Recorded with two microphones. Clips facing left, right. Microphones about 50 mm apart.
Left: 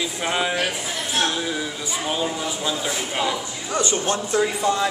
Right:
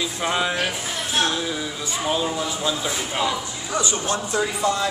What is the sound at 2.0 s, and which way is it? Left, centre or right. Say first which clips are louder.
Speech: right 2 dB; centre.